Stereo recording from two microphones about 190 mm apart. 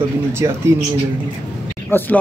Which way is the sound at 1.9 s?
10° left (ahead or behind).